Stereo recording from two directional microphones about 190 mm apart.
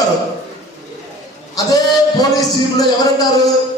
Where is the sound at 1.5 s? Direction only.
20° left (ahead or behind).